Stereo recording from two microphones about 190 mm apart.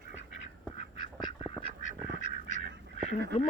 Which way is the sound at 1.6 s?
40° left (ahead or behind).